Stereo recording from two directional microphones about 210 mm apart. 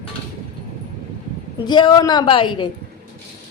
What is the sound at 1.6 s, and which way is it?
Speech, 20° left (ahead or behind).